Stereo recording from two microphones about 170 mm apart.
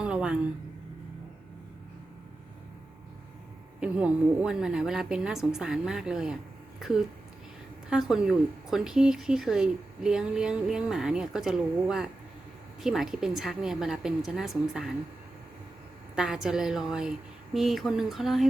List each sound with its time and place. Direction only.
0.0 s a sound: 5° right (ahead or behind)
3.8 s speech: 5° right (ahead or behind)
16.1 s speech: 5° right (ahead or behind)